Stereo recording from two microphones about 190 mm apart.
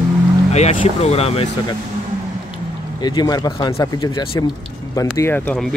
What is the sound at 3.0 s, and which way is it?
Speech, 20° left (ahead or behind).